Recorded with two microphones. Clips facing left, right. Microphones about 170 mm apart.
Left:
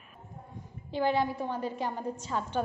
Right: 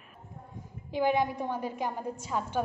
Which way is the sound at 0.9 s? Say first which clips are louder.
Right 1 dB; 15° right (ahead or behind).